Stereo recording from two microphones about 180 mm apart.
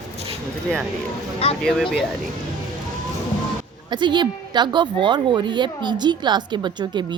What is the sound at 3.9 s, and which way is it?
A woman's voice, 25° right (ahead or behind).